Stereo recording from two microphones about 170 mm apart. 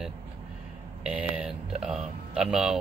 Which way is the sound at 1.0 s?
5° right (ahead or behind).